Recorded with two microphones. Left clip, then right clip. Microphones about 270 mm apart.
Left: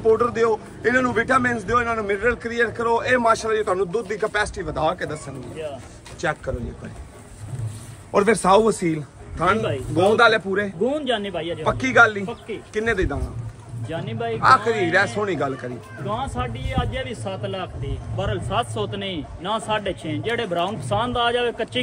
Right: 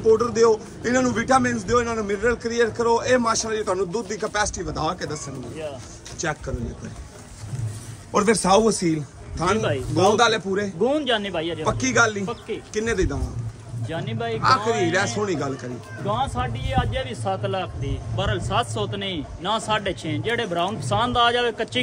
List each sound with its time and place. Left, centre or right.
0.1 s a man's voice: centre
8.1 s a man's voice: centre
10.8 s speech: right
11.6 s a man's voice: centre
16.1 s a man's voice: right
18.1 s a man's voice: centre